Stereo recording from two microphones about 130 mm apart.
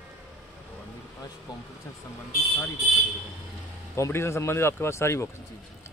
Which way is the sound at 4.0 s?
20° left (ahead or behind).